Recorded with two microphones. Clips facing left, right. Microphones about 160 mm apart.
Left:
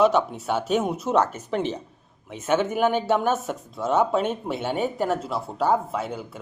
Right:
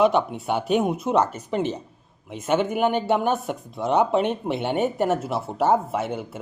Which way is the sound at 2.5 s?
10° right (ahead or behind).